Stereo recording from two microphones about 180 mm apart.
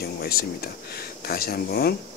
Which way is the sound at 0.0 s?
60° left (ahead or behind).